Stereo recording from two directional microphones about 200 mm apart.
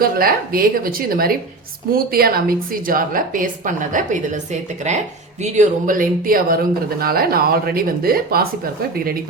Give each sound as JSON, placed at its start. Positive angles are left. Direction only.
{"t": 0.0, "sound": "a woman's voice", "side_deg": -45}